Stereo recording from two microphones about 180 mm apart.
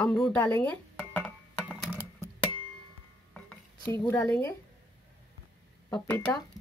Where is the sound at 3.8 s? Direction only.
15° left (ahead or behind).